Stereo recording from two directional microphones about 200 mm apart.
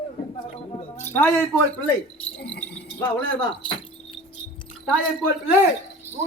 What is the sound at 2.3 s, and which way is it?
Jingle bell, 65° left (ahead or behind).